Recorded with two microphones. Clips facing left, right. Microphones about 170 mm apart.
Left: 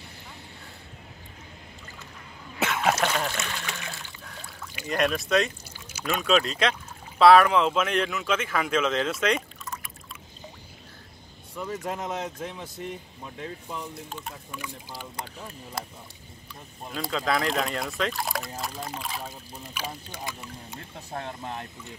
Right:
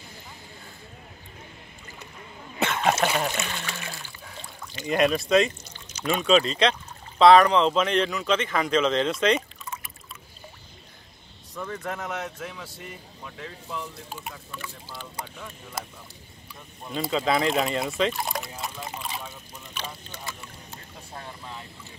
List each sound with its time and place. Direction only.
2.6 s speech: centre (ahead or behind)
4.2 s pour: 5° right (ahead or behind)
4.7 s speech: centre (ahead or behind)
11.7 s speech: 25° left (ahead or behind)
14.5 s speech: 10° left (ahead or behind)
16.9 s speech: centre (ahead or behind)
19.2 s speech: 35° left (ahead or behind)
19.7 s speech: 10° left (ahead or behind)
21.1 s speech: 45° left (ahead or behind)